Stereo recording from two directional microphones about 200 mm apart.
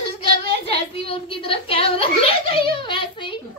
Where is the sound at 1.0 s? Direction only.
25° left (ahead or behind).